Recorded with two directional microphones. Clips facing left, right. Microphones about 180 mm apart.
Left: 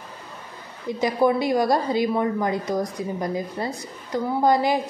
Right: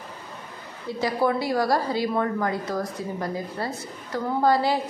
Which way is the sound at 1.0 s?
20° left (ahead or behind).